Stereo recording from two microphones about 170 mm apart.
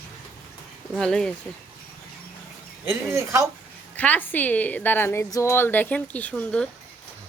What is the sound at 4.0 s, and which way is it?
A woman's voice, 10° left (ahead or behind).